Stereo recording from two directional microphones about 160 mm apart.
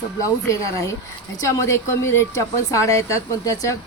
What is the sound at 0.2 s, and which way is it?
A woman's voice, 20° left (ahead or behind).